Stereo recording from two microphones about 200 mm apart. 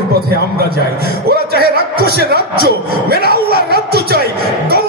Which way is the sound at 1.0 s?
50° right (ahead or behind).